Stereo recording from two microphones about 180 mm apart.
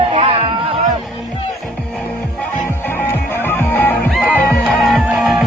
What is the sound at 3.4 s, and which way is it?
Music, 10° left (ahead or behind).